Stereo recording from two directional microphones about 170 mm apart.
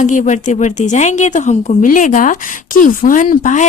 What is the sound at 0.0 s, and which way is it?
A woman's voice, 45° left (ahead or behind).